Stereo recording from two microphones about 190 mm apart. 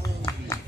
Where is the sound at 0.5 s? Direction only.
15° left (ahead or behind).